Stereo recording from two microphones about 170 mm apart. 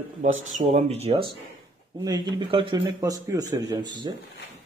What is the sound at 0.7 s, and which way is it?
Speech, 40° right (ahead or behind).